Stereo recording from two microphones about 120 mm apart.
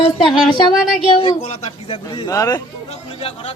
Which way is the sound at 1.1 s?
50° left (ahead or behind).